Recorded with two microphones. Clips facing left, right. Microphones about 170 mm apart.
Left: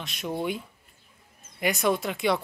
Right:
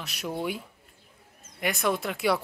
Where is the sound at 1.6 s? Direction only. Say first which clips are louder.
Left 2 dB; centre (ahead or behind).